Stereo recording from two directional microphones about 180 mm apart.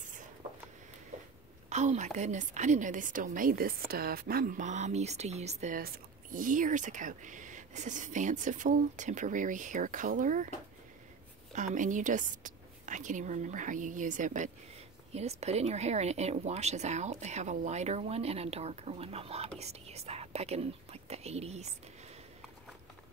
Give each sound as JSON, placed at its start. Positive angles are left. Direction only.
{"t": 1.7, "sound": "a woman's voice", "side_deg": -40}
{"t": 11.5, "sound": "speech", "side_deg": -45}